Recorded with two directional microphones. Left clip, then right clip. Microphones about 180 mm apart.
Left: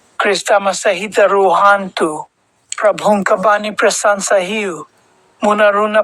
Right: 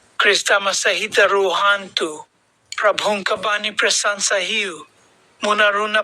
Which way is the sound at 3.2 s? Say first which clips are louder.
Left 8 dB; 20° right (ahead or behind).